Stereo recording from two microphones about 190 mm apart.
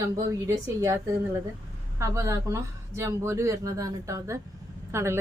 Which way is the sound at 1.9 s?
15° right (ahead or behind).